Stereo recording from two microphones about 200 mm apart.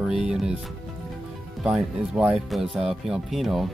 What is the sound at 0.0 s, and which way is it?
Speech, 5° right (ahead or behind).